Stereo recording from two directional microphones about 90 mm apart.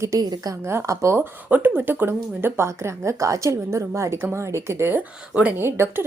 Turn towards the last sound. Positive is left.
turn(degrees=-25)  # may be behind; listen again after turning